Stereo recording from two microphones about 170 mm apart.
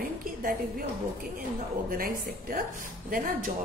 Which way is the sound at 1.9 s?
55° right (ahead or behind).